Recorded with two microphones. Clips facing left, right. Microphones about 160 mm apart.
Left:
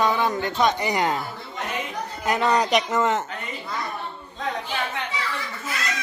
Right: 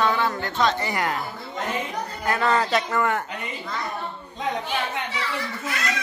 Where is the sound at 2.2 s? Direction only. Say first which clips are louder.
Left 1 dB; 20° left (ahead or behind).